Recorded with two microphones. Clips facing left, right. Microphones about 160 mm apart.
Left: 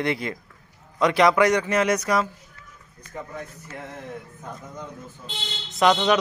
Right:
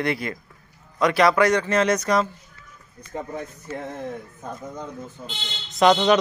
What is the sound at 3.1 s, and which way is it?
Speech, 35° right (ahead or behind).